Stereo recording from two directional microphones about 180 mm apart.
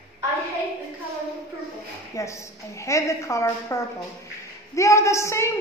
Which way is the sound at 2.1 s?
15° left (ahead or behind).